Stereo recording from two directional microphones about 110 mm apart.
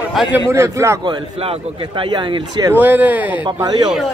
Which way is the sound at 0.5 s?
25° right (ahead or behind).